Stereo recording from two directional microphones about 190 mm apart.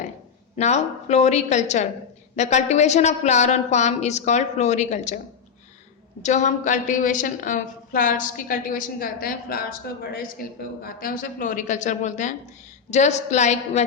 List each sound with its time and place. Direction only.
0.5 s a woman's voice: 35° left (ahead or behind)
6.2 s a woman's voice: 40° left (ahead or behind)
10.8 s a woman's voice: 45° left (ahead or behind)